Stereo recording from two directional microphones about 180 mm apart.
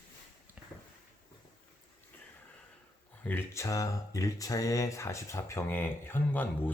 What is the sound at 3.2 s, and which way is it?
Speech, 10° left (ahead or behind).